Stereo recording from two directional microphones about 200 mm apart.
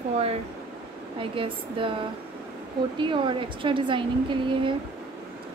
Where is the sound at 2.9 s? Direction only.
25° right (ahead or behind).